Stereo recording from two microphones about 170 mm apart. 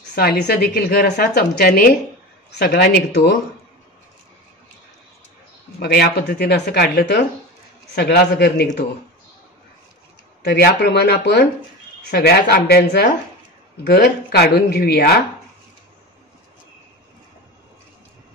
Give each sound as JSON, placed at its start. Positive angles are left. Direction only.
{"t": 0.1, "sound": "a woman's voice", "side_deg": 65}
{"t": 5.8, "sound": "speech", "side_deg": 70}
{"t": 10.4, "sound": "speech", "side_deg": 70}